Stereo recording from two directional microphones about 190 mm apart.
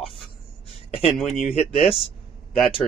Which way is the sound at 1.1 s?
Centre (ahead or behind).